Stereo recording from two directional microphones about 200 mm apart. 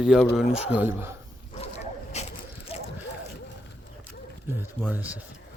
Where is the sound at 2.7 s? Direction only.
30° left (ahead or behind).